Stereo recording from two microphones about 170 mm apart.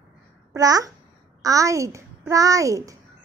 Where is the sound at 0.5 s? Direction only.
20° right (ahead or behind).